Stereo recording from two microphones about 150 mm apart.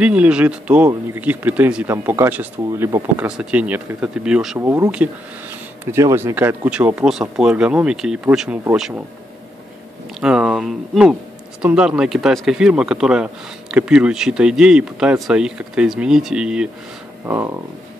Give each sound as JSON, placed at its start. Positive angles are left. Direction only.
{"t": 0.0, "sound": "speech", "side_deg": -10}
{"t": 3.3, "sound": "speech", "side_deg": -5}
{"t": 4.6, "sound": "speech", "side_deg": -20}
{"t": 10.2, "sound": "speech", "side_deg": -5}